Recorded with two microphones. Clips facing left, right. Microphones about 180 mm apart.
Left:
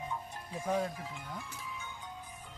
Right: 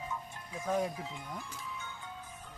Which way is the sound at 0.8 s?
20° right (ahead or behind).